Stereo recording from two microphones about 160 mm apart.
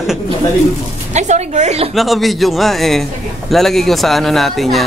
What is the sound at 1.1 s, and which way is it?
Speech, 45° right (ahead or behind).